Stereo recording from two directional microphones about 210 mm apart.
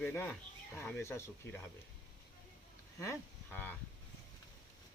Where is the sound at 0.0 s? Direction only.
10° left (ahead or behind).